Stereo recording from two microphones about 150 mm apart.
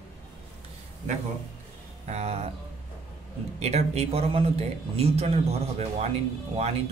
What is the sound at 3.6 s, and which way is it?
Speech, 45° right (ahead or behind).